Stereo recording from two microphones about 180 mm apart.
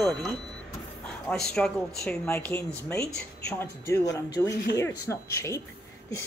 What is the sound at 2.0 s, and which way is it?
Speech, 15° left (ahead or behind).